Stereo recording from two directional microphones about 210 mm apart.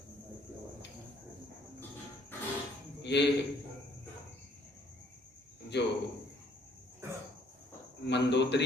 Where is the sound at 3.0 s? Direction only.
55° left (ahead or behind).